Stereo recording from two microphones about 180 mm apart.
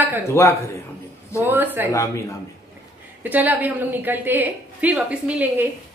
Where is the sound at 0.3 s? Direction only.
15° left (ahead or behind).